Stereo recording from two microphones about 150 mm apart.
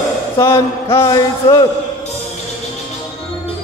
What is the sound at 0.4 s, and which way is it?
A man's voice, 20° left (ahead or behind).